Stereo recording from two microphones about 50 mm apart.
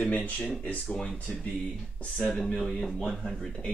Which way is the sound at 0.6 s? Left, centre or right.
Left.